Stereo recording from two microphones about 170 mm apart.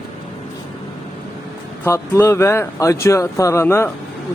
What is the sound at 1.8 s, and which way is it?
Speech, 15° left (ahead or behind).